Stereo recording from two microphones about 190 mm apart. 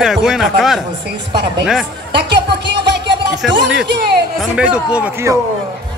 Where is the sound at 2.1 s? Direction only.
65° right (ahead or behind).